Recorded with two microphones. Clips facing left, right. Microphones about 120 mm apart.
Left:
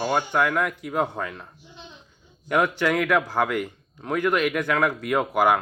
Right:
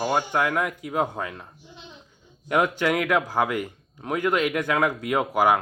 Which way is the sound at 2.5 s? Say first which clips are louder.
Even; 15° right (ahead or behind).